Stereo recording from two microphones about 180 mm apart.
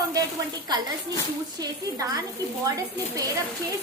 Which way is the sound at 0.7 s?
25° right (ahead or behind).